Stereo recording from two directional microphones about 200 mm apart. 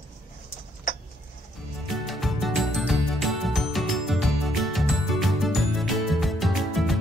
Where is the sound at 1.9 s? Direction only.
Centre (ahead or behind).